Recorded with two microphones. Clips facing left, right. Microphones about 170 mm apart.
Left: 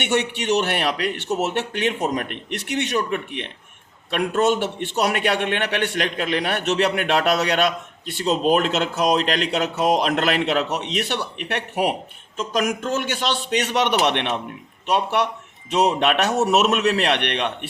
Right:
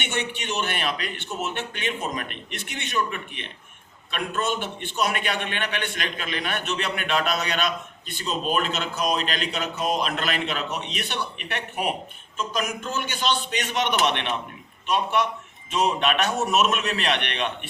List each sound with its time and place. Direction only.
0.0 s a man's voice: 75° left (ahead or behind)
12.4 s a man's voice: 85° left; by 17.7 s 70° left (ahead or behind)